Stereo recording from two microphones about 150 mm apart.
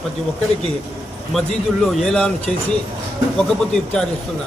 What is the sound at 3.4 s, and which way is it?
Speech, 5° left (ahead or behind).